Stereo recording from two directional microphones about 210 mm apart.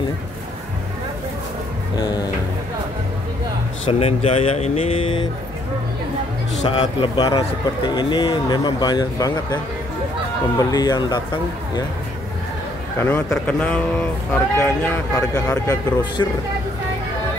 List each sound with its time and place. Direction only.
3.8 s a man's voice: 30° left (ahead or behind)
6.6 s a man's voice: 30° left (ahead or behind)
10.6 s a man's voice: 20° left (ahead or behind)
13.0 s speech: 10° left (ahead or behind)